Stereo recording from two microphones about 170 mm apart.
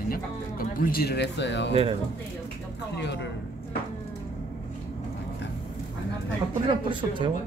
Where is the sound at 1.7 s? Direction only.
35° right (ahead or behind).